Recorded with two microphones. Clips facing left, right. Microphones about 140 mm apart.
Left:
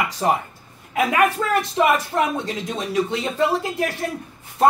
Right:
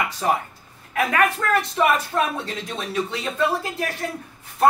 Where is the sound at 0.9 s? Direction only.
15° left (ahead or behind).